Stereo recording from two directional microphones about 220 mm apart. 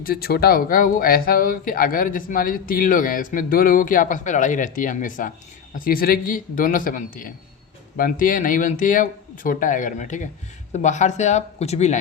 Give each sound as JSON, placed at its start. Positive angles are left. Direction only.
{"t": 0.0, "sound": "speech", "side_deg": 45}